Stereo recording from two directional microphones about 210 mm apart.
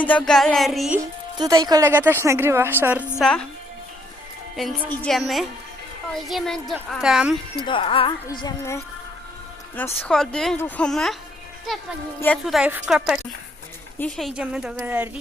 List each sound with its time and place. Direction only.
0.0 s speech: 5° left (ahead or behind)
1.4 s a woman's voice: 20° right (ahead or behind)
3.2 s speech: 5° left (ahead or behind)
4.9 s speech: centre (ahead or behind)
7.6 s a woman's voice: 25° left (ahead or behind); by 15.2 s 10° right (ahead or behind)